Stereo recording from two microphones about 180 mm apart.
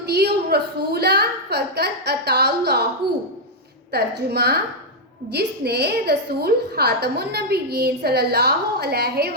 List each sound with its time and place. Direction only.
0.0 s a woman's voice: 65° right (ahead or behind)
3.9 s a woman's voice: 60° right (ahead or behind)